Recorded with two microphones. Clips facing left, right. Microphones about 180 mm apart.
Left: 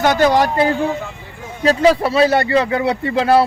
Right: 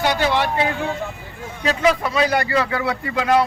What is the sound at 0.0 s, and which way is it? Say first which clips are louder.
Speech: left 6 dB; 45° left (ahead or behind).